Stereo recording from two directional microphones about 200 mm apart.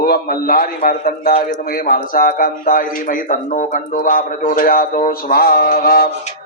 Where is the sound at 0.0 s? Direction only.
50° left (ahead or behind).